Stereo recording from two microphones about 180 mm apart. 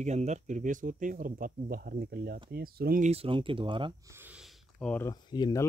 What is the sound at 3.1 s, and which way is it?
Speech, 30° right (ahead or behind).